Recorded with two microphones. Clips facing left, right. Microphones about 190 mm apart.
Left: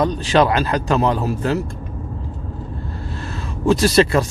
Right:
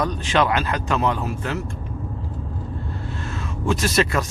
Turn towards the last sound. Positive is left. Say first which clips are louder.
# left 6 dB
turn(degrees=30)  # may be behind; listen again after turning